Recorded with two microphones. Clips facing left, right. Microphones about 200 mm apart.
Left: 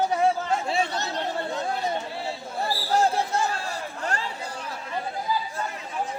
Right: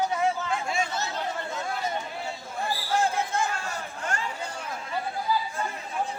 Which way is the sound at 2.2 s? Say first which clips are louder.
Left 3 dB; 35° left (ahead or behind).